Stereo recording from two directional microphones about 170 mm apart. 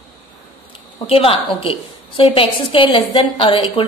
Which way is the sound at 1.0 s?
35° left (ahead or behind).